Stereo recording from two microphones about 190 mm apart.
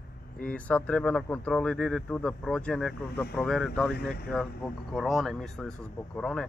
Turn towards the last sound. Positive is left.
turn(degrees=5)  # may be behind; listen again after turning